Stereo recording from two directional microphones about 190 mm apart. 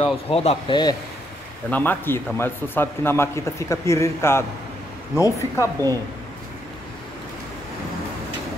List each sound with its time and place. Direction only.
0.0 s speech: 30° left (ahead or behind)
1.7 s speech: 10° left (ahead or behind)